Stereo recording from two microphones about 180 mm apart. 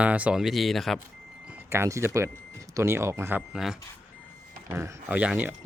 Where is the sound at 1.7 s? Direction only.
15° right (ahead or behind).